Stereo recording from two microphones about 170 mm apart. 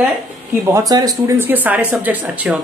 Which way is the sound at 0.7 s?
20° right (ahead or behind).